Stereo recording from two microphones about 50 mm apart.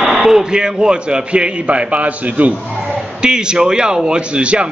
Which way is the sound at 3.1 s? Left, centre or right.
Centre.